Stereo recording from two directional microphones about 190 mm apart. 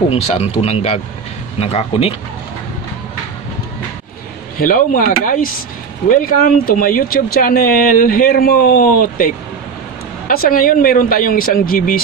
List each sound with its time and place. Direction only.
0.1 s speech: 30° left (ahead or behind)
4.6 s speech: 45° left (ahead or behind)